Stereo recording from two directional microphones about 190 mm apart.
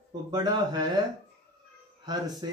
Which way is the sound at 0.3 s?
20° right (ahead or behind).